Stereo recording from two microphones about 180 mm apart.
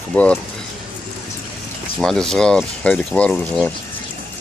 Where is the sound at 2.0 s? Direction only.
Centre (ahead or behind).